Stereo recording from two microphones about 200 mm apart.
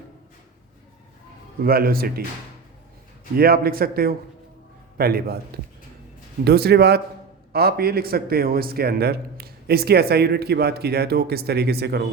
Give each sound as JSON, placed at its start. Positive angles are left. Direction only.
{"t": 1.6, "sound": "a man's voice", "side_deg": -50}
{"t": 3.3, "sound": "a man's voice", "side_deg": -50}
{"t": 6.4, "sound": "a man's voice", "side_deg": -50}